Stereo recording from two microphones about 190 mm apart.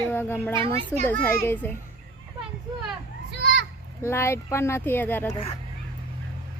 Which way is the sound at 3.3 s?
60° right (ahead or behind).